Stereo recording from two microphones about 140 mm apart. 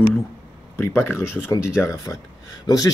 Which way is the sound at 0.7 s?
15° left (ahead or behind).